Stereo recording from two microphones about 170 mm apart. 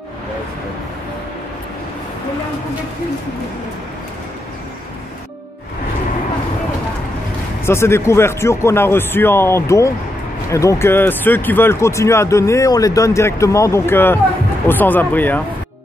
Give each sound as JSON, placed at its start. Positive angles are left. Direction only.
{"t": 7.6, "sound": "speech", "side_deg": 15}